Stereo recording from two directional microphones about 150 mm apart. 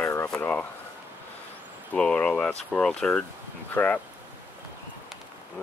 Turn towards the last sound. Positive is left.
turn(degrees=15)  # may be behind; listen again after turning